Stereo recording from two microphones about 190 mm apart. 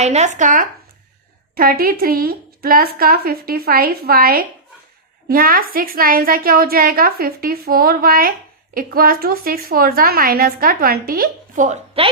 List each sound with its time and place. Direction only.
0.0 s a woman's voice: 35° right (ahead or behind)